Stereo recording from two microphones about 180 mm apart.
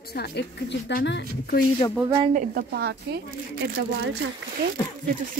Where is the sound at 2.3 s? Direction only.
60° right (ahead or behind).